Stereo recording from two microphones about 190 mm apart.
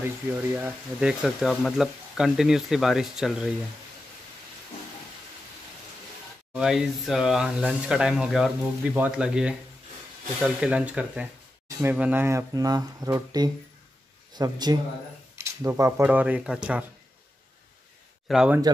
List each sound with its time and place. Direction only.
0.2 s speech: 10° right (ahead or behind)
6.5 s speech: 5° right (ahead or behind)
18.3 s speech: 5° right (ahead or behind)